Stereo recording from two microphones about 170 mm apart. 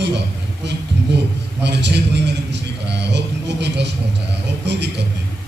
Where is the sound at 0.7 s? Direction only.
90° right.